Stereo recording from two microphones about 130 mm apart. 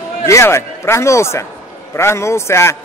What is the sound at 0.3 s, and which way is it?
A man's voice, 20° left (ahead or behind).